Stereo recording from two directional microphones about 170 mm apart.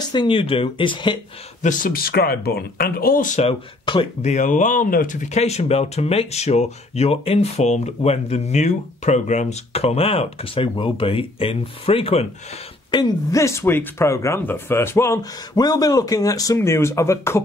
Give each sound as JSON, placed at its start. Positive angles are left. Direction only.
{"t": 0.1, "sound": "speech", "side_deg": 30}
{"t": 1.6, "sound": "speech", "side_deg": 50}
{"t": 3.3, "sound": "speech", "side_deg": 30}
{"t": 4.2, "sound": "speech", "side_deg": 45}
{"t": 12.9, "sound": "speech", "side_deg": 20}